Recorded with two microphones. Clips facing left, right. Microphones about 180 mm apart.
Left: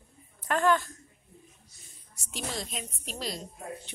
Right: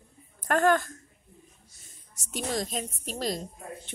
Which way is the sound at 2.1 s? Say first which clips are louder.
Right 5 dB; 45° right (ahead or behind).